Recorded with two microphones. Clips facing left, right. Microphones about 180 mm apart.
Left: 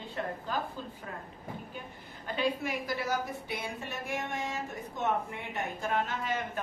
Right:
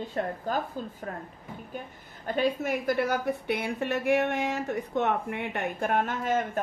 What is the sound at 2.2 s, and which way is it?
A woman's voice, 45° right (ahead or behind).